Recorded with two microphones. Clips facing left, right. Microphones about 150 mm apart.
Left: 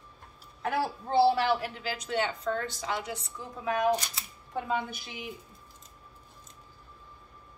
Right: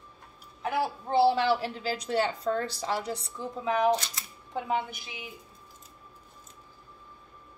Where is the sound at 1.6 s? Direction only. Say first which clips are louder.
Right 3 dB; 35° right (ahead or behind).